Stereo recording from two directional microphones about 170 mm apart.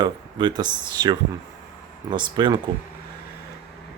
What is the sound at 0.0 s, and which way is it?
Speech, 25° right (ahead or behind).